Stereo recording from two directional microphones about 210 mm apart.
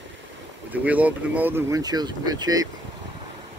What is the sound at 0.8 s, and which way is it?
Speech, 5° right (ahead or behind).